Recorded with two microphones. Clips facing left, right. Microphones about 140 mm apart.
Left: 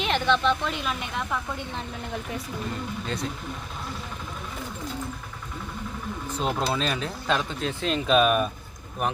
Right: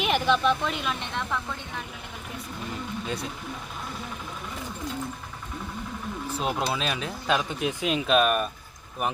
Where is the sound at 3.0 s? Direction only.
10° right (ahead or behind).